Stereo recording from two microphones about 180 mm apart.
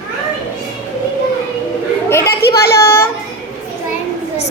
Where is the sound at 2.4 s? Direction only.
65° left (ahead or behind).